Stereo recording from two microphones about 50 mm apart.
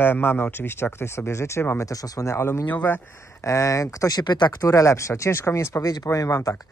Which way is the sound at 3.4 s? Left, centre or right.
Left.